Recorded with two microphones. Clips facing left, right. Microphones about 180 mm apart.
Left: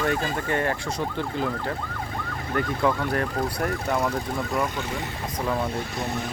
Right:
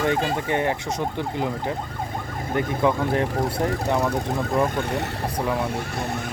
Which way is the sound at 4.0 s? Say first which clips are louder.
Right 3 dB; 35° right (ahead or behind).